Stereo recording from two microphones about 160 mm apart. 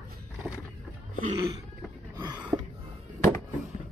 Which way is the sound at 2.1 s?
25° right (ahead or behind).